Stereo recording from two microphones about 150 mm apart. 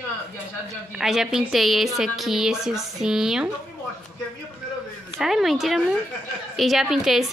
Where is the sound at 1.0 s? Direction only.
Centre (ahead or behind).